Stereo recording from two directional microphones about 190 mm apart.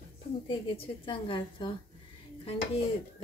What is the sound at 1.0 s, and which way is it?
Speech, 25° left (ahead or behind).